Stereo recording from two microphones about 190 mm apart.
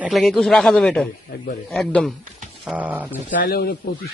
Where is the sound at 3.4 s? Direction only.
50° left (ahead or behind).